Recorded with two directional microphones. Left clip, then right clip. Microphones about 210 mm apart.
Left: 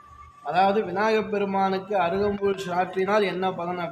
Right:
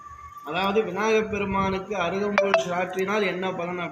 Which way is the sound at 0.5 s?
20° left (ahead or behind).